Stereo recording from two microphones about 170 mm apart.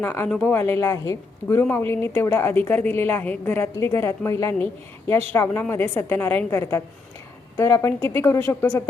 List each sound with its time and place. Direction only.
0.0 s speech: 15° left (ahead or behind)
0.3 s speech: 5° left (ahead or behind)
0.5 s speech: 15° left (ahead or behind)